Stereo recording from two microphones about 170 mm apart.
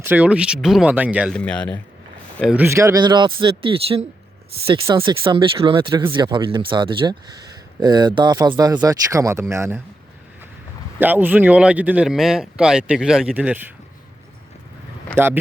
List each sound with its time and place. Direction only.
0.0 s speech: 10° right (ahead or behind)
1.3 s speech: 5° left (ahead or behind)
2.5 s speech: 15° right (ahead or behind)
11.0 s speech: 10° right (ahead or behind)
15.1 s speech: 10° right (ahead or behind)